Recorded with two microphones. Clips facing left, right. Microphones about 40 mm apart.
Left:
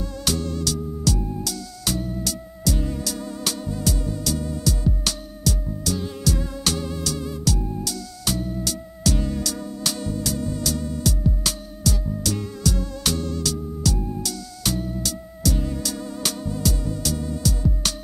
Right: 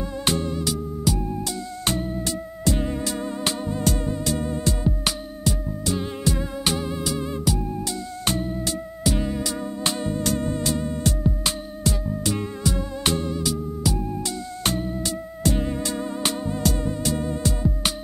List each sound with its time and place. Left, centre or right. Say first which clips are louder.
0.0 s music: right 2 dB; right
14.6 s music: right 1 dB; right